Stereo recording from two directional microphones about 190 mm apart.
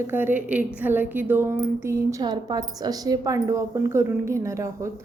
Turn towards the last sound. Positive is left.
turn(degrees=-15)  # may be behind; listen again after turning